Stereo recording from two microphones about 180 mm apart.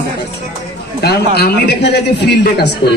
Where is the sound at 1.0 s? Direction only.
65° left (ahead or behind).